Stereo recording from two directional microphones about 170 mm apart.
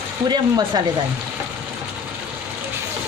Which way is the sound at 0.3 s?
25° right (ahead or behind).